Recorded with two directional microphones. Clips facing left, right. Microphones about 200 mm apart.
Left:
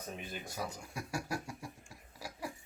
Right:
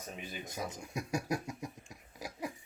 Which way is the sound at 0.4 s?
20° right (ahead or behind).